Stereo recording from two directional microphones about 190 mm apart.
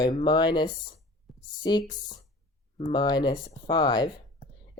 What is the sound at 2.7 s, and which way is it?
Speech, 30° left (ahead or behind).